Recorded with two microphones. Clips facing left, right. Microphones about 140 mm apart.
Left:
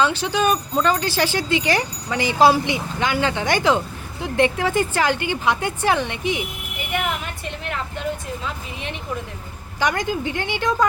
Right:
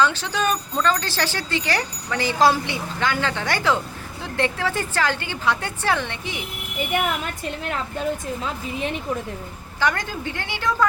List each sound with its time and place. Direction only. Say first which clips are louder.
0.0 s speech: left 2 dB; 15° left (ahead or behind)
9.8 s speech: left 2 dB; 15° left (ahead or behind)